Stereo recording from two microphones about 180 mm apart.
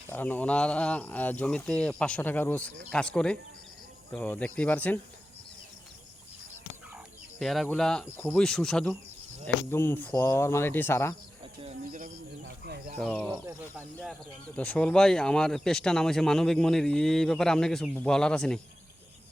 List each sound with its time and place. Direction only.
0.1 s speech: 10° left (ahead or behind)
6.9 s fowl: centre (ahead or behind)
8.0 s speech: 15° left (ahead or behind)
8.4 s speech: 5° left (ahead or behind)
11.9 s speech: 45° right (ahead or behind)
12.6 s speech: 60° right (ahead or behind)
13.0 s speech: 5° left (ahead or behind)
13.3 s speech: 15° right (ahead or behind)
13.9 s speech: 5° left (ahead or behind)